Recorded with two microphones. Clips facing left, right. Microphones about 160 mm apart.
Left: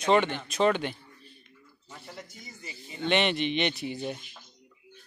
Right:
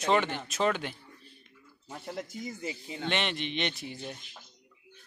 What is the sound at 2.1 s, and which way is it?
Speech, 90° right.